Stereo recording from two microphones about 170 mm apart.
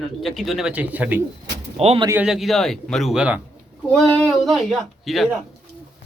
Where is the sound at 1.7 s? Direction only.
35° right (ahead or behind).